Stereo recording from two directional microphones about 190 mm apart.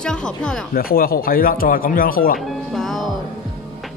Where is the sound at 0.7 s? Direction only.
50° left (ahead or behind).